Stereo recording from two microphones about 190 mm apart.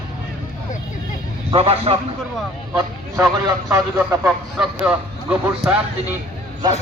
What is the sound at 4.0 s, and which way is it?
Speech, 5° right (ahead or behind).